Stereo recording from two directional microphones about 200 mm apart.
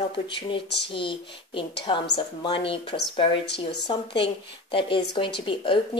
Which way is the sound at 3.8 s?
25° left (ahead or behind).